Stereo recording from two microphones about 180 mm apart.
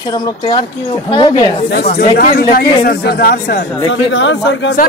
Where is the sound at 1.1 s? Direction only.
25° left (ahead or behind).